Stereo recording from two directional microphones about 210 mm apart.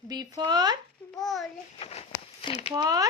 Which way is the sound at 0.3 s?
20° right (ahead or behind).